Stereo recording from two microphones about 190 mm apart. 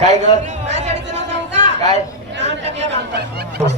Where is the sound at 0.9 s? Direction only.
65° right (ahead or behind).